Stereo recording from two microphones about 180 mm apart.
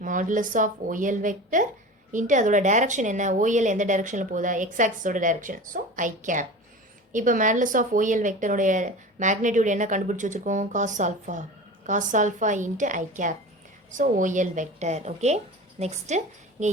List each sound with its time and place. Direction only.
0.0 s a woman's voice: 45° right (ahead or behind)